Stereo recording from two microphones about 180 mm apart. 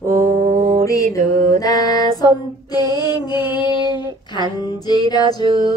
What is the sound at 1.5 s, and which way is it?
Mantra, 20° left (ahead or behind).